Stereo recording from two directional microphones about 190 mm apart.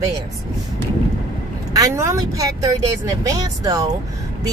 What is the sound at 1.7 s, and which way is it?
Speech, 15° right (ahead or behind).